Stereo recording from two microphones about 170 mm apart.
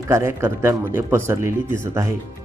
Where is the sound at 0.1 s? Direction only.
15° right (ahead or behind).